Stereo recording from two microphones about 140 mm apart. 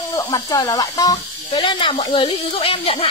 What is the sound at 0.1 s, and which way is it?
Speech, 25° left (ahead or behind).